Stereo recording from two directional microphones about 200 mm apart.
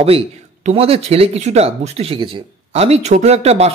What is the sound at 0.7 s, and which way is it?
Speech, 30° right (ahead or behind).